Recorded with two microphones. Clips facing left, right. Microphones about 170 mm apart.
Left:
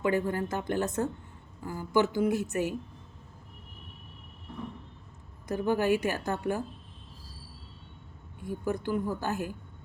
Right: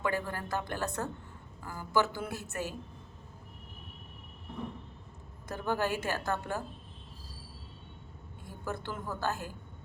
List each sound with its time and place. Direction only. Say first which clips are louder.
0.0 s a woman's voice: left 6 dB; 20° left (ahead or behind)
5.5 s a woman's voice: left 6 dB; 15° left (ahead or behind)
8.6 s a woman's voice: left 7 dB; 15° left (ahead or behind)